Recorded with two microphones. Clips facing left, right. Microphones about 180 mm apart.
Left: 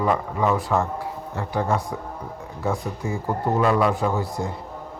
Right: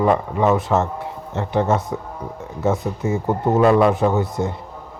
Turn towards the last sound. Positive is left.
turn(degrees=-20)  # may be behind; listen again after turning